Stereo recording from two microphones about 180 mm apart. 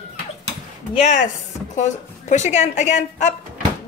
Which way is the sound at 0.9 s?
40° left (ahead or behind).